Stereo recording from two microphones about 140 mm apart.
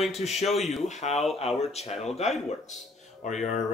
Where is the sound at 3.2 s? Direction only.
60° left (ahead or behind).